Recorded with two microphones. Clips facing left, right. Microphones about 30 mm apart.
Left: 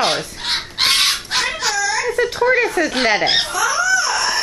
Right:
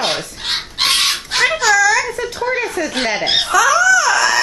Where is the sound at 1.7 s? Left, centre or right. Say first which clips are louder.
Right 9 dB; right.